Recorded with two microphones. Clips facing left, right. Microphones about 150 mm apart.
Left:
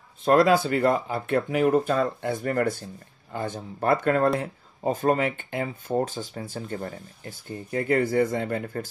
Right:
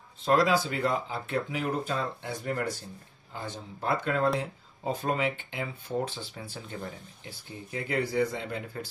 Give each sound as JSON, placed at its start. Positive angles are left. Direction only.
{"t": 0.2, "sound": "speech", "side_deg": 50}